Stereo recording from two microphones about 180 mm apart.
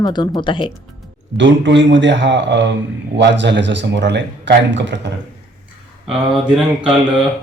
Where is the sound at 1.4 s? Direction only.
90° right.